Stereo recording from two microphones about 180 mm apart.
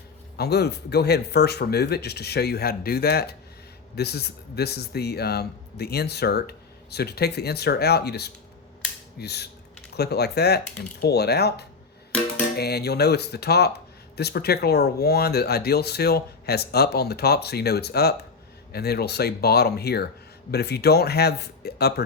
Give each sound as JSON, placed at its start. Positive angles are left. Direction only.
{"t": 0.3, "sound": "speech", "side_deg": 65}